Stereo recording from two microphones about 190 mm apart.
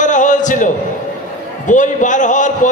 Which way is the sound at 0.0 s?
40° left (ahead or behind).